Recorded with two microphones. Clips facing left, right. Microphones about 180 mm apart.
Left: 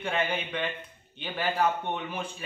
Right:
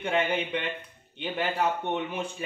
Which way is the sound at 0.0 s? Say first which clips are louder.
Right 3 dB; 15° right (ahead or behind).